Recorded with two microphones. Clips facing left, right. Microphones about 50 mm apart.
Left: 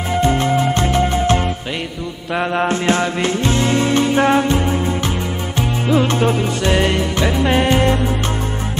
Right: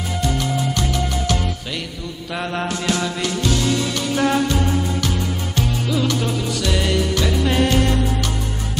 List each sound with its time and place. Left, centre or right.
0.1 s music: left